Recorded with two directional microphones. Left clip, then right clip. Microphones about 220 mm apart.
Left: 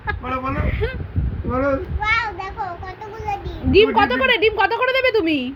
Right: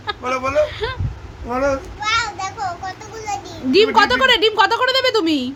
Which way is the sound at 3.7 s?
10° right (ahead or behind).